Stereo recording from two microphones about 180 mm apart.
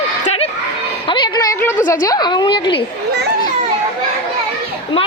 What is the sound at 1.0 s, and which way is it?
A woman's voice, 25° left (ahead or behind).